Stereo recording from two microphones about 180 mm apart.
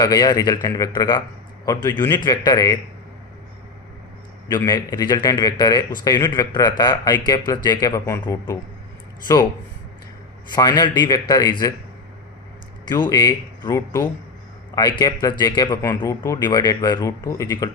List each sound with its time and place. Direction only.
0.0 s speech: 20° left (ahead or behind)
4.4 s speech: 20° left (ahead or behind)
10.5 s speech: 20° left (ahead or behind)
12.9 s speech: 20° left (ahead or behind)